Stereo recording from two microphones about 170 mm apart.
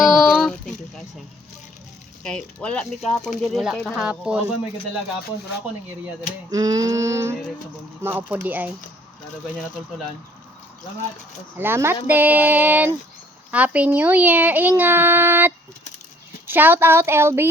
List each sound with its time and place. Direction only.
0.0 s a sound: centre (ahead or behind)
2.2 s speech: 5° left (ahead or behind)
6.5 s female singing: 20° right (ahead or behind)
8.0 s a child's voice: 15° right (ahead or behind)
11.5 s a child's voice: 15° right (ahead or behind)